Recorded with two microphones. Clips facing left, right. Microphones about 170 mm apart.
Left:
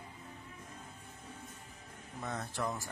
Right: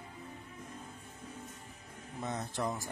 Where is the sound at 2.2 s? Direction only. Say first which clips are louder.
Right 2 dB; 20° right (ahead or behind).